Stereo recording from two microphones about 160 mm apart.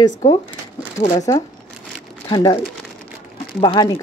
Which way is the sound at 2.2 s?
25° left (ahead or behind).